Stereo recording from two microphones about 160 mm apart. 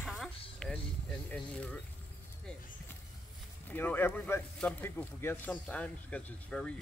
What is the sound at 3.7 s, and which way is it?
Speech, 10° left (ahead or behind).